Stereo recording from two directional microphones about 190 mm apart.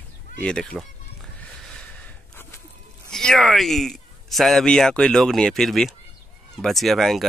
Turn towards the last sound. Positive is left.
turn(degrees=0)  # may be behind; listen again after turning